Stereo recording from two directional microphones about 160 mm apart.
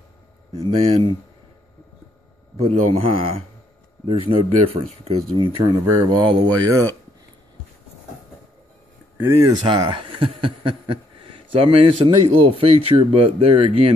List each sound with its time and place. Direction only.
0.5 s speech: 40° right (ahead or behind)
2.5 s speech: 40° right (ahead or behind); by 6.8 s 25° right (ahead or behind)
9.2 s speech: 15° right (ahead or behind)
9.7 s speech: 30° right (ahead or behind)